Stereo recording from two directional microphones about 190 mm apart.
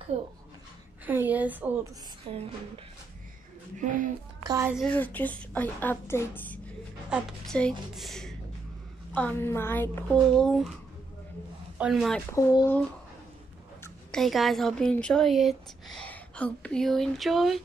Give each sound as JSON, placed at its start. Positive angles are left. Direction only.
{"t": 0.1, "sound": "a woman's voice", "side_deg": -30}
{"t": 1.0, "sound": "a woman's voice", "side_deg": -10}
{"t": 2.3, "sound": "music", "side_deg": -25}
{"t": 3.7, "sound": "a woman's voice", "side_deg": -40}
{"t": 4.4, "sound": "a woman's voice", "side_deg": -15}
{"t": 4.7, "sound": "a woman's voice", "side_deg": 5}
{"t": 7.1, "sound": "a woman's voice", "side_deg": -5}
{"t": 11.8, "sound": "a woman's voice", "side_deg": 0}
{"t": 12.3, "sound": "a woman's voice", "side_deg": 15}
{"t": 14.1, "sound": "a woman's voice", "side_deg": 0}